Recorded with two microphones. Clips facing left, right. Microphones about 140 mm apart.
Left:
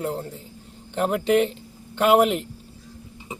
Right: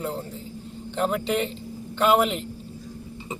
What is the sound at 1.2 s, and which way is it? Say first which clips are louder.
Speech: left 6 dB; 55° left (ahead or behind).